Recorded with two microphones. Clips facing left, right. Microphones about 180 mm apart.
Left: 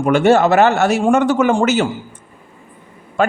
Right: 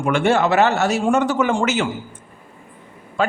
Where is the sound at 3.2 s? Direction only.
50° left (ahead or behind).